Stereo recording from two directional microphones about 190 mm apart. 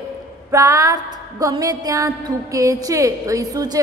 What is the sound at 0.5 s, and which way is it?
Music, 15° right (ahead or behind).